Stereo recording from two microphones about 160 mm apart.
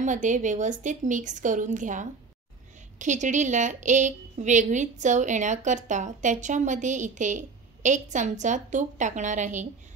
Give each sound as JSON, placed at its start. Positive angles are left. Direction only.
{"t": 0.0, "sound": "a woman's voice", "side_deg": -50}